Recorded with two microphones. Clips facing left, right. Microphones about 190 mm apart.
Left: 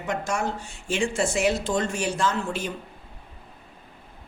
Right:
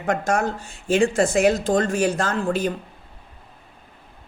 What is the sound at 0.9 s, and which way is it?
Speech, 40° right (ahead or behind).